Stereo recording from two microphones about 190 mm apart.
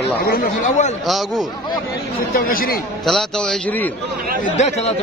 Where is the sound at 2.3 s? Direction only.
50° left (ahead or behind).